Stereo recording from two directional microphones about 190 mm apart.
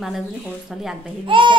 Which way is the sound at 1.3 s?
25° right (ahead or behind).